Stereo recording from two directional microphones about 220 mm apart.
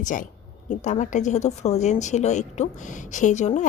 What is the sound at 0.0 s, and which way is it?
A woman's voice, 35° left (ahead or behind).